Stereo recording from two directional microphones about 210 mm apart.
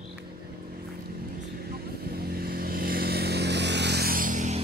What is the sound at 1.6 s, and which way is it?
Vehicle, 45° right (ahead or behind).